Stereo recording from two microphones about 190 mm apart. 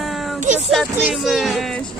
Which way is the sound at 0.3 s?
40° right (ahead or behind).